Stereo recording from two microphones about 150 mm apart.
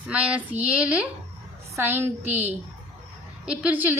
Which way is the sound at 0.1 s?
10° right (ahead or behind).